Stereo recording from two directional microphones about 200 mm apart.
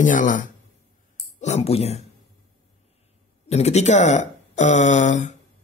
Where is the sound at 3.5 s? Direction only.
35° left (ahead or behind).